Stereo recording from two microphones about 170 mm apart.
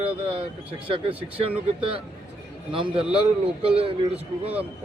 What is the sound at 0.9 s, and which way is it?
Speech, 35° right (ahead or behind).